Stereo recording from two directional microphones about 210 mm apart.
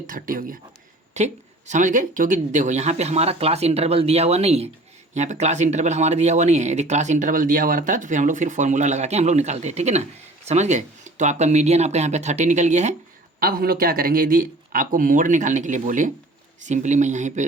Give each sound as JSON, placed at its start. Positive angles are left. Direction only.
{"t": 0.1, "sound": "speech", "side_deg": -40}
{"t": 13.4, "sound": "speech", "side_deg": -45}